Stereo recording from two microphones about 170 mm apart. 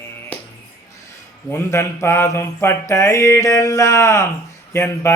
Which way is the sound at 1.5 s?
15° left (ahead or behind).